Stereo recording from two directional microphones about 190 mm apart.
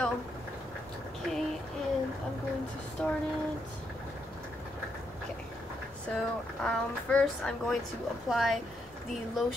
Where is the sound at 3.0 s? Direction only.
5° left (ahead or behind).